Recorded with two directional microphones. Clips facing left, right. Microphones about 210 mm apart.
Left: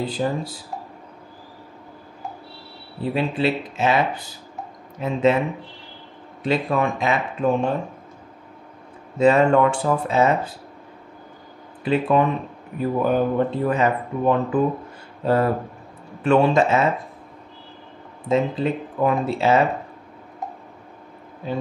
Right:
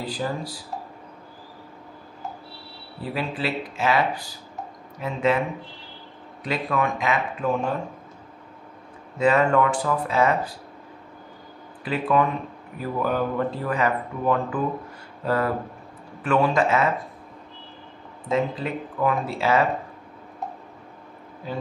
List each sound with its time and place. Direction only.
0.0 s speech: 25° left (ahead or behind)
3.0 s speech: 25° left (ahead or behind)
6.4 s speech: 30° left (ahead or behind)
9.2 s speech: 25° left (ahead or behind)
11.8 s speech: 25° left (ahead or behind)
18.3 s speech: 25° left (ahead or behind)